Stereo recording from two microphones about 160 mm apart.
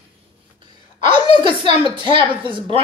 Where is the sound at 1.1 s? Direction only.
30° right (ahead or behind).